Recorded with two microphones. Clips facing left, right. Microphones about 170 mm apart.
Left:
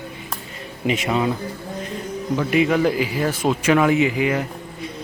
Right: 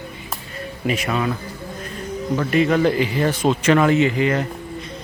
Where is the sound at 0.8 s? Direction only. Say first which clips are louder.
Left 1 dB; 20° left (ahead or behind).